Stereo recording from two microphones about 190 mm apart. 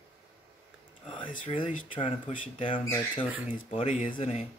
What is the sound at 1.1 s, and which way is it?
Speech, 40° left (ahead or behind).